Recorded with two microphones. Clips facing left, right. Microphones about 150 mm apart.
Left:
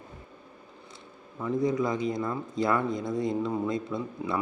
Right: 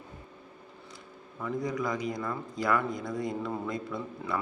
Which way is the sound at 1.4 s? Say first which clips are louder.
Left 5 dB; 20° left (ahead or behind).